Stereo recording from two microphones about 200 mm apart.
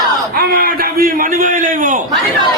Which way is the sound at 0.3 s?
50° right (ahead or behind).